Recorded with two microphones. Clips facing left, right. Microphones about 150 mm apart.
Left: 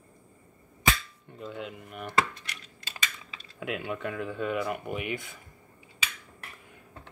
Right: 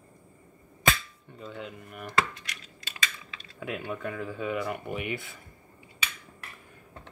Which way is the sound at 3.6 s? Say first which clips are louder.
Left 1 dB; centre (ahead or behind).